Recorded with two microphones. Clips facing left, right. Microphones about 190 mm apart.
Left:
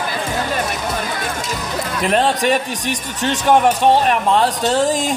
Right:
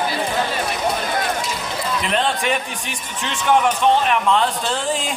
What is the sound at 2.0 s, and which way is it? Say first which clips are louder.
Speech: left 6 dB; 45° left (ahead or behind).